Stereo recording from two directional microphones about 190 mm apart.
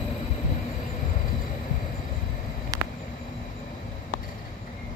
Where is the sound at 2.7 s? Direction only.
20° right (ahead or behind).